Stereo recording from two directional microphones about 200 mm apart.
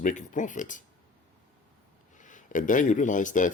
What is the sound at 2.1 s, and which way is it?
Speech, 40° left (ahead or behind).